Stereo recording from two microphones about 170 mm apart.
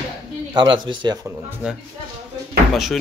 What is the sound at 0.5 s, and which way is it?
Speech, 30° right (ahead or behind).